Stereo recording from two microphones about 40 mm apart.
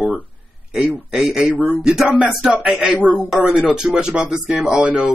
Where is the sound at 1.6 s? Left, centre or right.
Centre.